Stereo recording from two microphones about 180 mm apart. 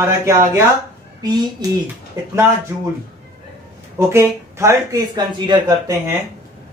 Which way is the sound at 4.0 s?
15° right (ahead or behind).